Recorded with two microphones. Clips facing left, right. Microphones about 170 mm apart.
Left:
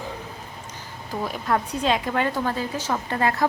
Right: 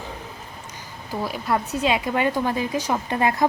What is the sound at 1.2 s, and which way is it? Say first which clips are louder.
A woman's voice: even; 5° right (ahead or behind).